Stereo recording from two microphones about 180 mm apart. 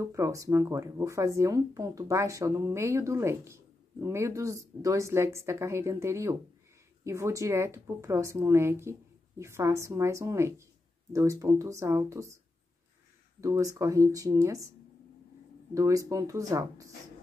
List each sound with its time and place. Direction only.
0.0 s speech: 15° right (ahead or behind)
13.4 s speech: 20° right (ahead or behind)
15.7 s speech: 20° right (ahead or behind)